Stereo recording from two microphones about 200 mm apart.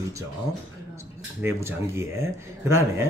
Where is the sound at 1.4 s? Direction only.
15° right (ahead or behind).